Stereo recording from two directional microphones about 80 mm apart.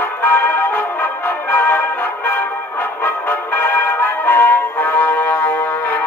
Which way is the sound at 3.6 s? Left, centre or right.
Left.